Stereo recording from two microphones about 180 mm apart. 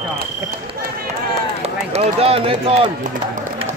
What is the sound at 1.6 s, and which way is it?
Speech, 35° right (ahead or behind).